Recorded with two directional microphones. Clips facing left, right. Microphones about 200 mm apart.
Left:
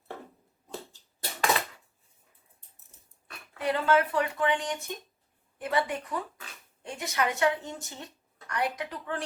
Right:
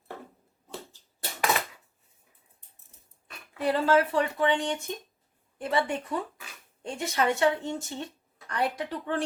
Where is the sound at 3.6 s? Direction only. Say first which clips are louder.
Right 2 dB; 30° right (ahead or behind).